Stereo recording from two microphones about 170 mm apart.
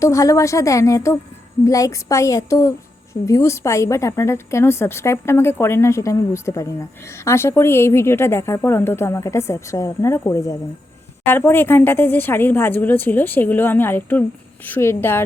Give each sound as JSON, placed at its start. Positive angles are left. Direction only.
{"t": 0.0, "sound": "a woman's voice", "side_deg": 20}